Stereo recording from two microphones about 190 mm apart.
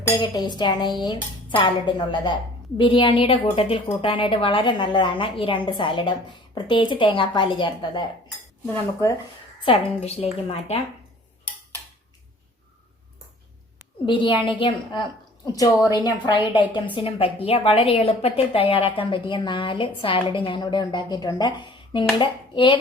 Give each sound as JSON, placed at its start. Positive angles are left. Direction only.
{"t": 0.2, "sound": "speech", "side_deg": 25}
{"t": 9.6, "sound": "speech", "side_deg": 30}
{"t": 14.0, "sound": "speech", "side_deg": 25}